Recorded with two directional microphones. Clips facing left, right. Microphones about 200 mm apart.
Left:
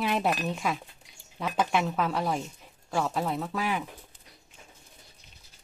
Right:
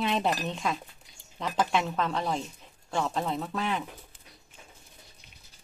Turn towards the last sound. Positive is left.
turn(degrees=5)  # may be behind; listen again after turning